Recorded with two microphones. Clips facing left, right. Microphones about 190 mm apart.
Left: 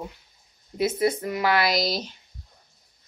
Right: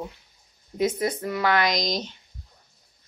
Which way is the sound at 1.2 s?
10° left (ahead or behind).